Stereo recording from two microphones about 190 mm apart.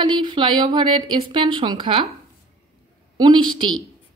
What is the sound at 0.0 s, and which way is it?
A woman's voice, 25° right (ahead or behind).